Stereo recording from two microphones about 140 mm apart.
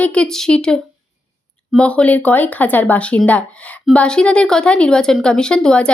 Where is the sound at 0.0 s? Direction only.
10° left (ahead or behind).